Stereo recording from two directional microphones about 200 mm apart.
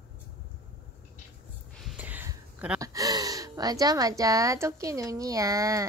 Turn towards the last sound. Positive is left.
turn(degrees=-15)  # may be behind; listen again after turning